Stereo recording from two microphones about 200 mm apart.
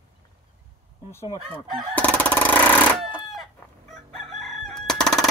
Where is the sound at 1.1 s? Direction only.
15° left (ahead or behind).